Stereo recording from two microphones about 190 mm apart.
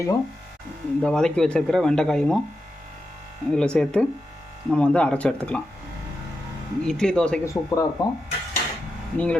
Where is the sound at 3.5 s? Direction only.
5° left (ahead or behind).